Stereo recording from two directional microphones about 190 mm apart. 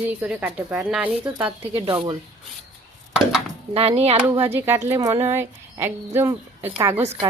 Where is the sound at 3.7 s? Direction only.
35° right (ahead or behind).